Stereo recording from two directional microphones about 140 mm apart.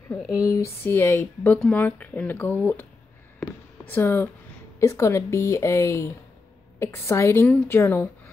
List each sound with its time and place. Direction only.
0.1 s a woman's voice: 20° left (ahead or behind)